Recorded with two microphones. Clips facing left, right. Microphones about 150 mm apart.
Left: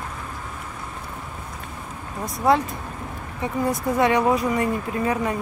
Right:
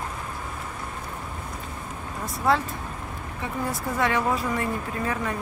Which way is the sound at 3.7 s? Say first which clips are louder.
Left 6 dB; 15° left (ahead or behind).